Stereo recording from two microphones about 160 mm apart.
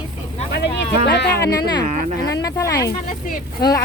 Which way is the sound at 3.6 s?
25° left (ahead or behind).